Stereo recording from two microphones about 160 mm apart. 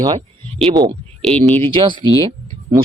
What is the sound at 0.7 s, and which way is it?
Speech, 25° right (ahead or behind).